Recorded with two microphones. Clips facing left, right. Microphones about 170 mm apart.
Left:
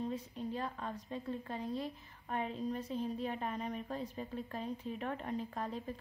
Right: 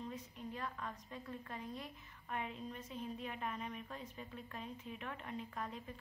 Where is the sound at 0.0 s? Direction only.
30° left (ahead or behind).